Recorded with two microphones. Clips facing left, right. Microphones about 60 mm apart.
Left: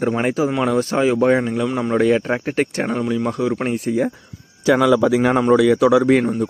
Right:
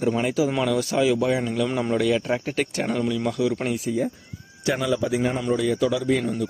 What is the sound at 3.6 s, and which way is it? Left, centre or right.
Speech, left.